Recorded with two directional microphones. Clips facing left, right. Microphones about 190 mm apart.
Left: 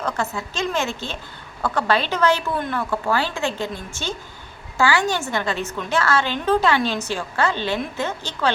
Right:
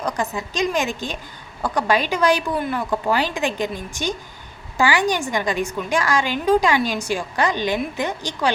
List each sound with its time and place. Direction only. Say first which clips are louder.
0.0 s a woman's voice: right 1 dB; 15° right (ahead or behind)